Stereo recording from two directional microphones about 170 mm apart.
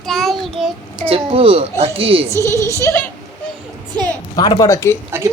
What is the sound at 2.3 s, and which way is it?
Speech, 15° left (ahead or behind).